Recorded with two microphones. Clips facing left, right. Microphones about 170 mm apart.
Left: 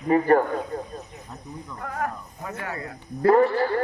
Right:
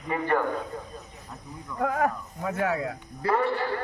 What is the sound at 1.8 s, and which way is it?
Speech, 55° right (ahead or behind).